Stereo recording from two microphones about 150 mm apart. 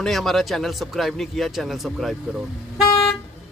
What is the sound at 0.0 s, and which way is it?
Speech, centre (ahead or behind).